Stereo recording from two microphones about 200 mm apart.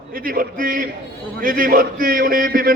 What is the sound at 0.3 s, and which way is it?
A man's voice, 45° right (ahead or behind).